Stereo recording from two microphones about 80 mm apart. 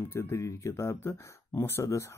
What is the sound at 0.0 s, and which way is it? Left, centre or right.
Speech, left.